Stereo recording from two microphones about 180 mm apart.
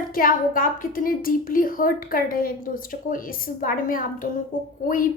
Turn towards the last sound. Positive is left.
turn(degrees=50)  # may be behind; listen again after turning